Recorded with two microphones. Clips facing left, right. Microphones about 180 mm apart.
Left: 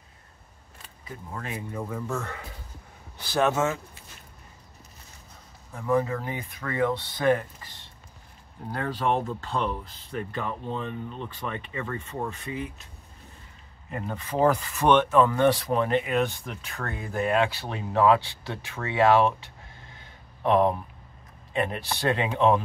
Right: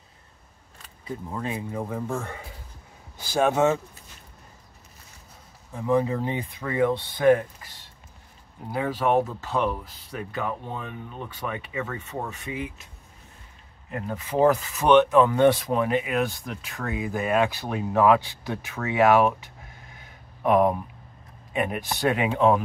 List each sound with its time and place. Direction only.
1.3 s speech: 25° right (ahead or behind)
3.2 s speech: 10° right (ahead or behind)
5.7 s speech: 15° right (ahead or behind)
8.7 s speech: 5° right (ahead or behind)
13.8 s speech: centre (ahead or behind)
20.0 s a sound: 10° right (ahead or behind)
21.5 s speech: 15° right (ahead or behind)